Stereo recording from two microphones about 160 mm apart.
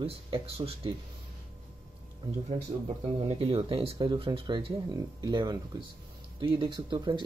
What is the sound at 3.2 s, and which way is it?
Speech, 35° right (ahead or behind).